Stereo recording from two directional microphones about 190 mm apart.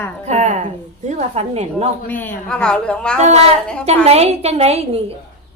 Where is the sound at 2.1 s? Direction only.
10° left (ahead or behind).